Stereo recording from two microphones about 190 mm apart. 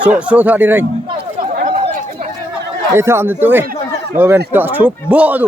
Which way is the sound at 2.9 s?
15° right (ahead or behind).